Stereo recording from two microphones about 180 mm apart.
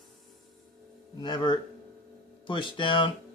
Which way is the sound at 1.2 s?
25° left (ahead or behind).